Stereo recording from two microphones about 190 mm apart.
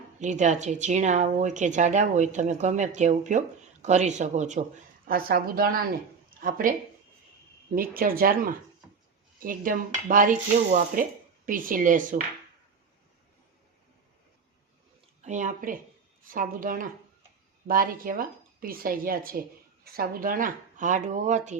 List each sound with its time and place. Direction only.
0.2 s speech: 40° right (ahead or behind)
5.0 s speech: 50° right (ahead or behind)
7.8 s speech: 50° right (ahead or behind)
15.2 s speech: 40° right (ahead or behind)